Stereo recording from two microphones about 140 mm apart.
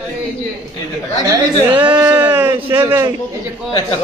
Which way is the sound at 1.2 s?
20° right (ahead or behind).